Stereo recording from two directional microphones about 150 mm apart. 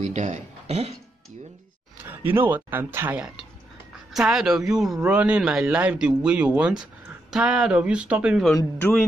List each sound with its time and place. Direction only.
0.0 s a sound: 50° right (ahead or behind)
2.0 s a man's voice: 15° right (ahead or behind)
8.5 s a man's voice: 15° left (ahead or behind)